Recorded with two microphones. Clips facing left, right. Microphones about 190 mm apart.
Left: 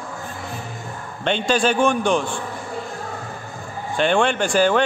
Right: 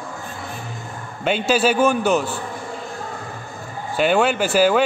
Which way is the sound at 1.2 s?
5° right (ahead or behind).